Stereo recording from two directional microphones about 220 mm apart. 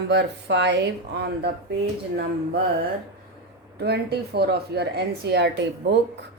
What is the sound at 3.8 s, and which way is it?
Speech, 50° right (ahead or behind).